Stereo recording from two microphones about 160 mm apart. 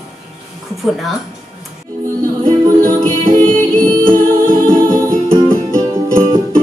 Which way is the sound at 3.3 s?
10° left (ahead or behind).